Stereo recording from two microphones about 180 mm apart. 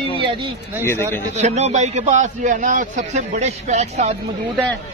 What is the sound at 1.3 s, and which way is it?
A man's voice, 40° right (ahead or behind).